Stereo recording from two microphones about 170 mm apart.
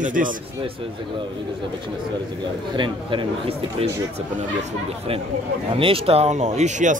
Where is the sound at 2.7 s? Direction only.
30° right (ahead or behind); by 6.9 s 45° right (ahead or behind).